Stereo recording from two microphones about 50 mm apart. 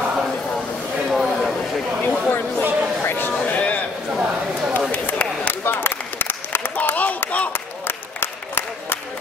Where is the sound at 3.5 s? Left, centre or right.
Left.